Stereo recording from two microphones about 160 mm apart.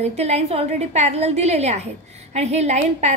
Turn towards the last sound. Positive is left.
turn(degrees=-45)  # may be behind; listen again after turning